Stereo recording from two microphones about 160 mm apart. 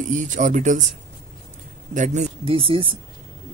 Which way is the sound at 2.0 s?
45° right (ahead or behind).